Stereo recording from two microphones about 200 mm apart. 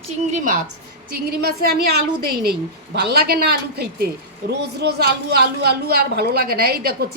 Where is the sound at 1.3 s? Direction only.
50° right (ahead or behind).